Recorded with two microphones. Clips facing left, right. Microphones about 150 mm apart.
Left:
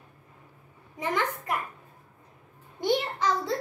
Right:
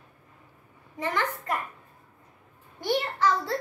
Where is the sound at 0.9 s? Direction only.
15° left (ahead or behind).